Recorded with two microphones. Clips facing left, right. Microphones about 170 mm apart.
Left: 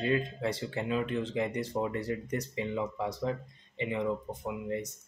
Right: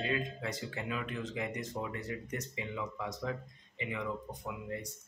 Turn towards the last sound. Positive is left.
turn(degrees=25)  # may be behind; listen again after turning